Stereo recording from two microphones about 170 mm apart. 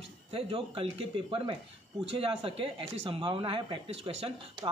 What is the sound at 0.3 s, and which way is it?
Speech, 30° right (ahead or behind).